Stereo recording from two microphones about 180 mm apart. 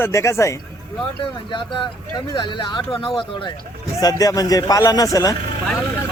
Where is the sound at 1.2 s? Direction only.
25° left (ahead or behind).